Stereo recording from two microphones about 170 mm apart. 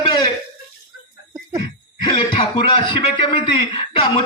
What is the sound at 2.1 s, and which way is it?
Speech, 30° left (ahead or behind).